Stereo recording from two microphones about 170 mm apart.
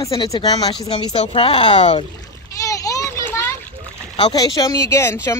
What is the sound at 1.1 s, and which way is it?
Speech, 35° left (ahead or behind).